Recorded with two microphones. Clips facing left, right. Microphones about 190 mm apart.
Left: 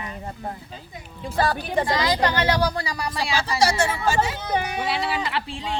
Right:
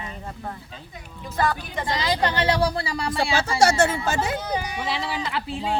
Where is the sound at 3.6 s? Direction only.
55° right (ahead or behind).